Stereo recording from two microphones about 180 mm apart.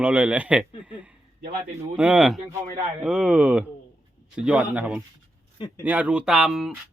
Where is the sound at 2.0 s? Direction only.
5° right (ahead or behind).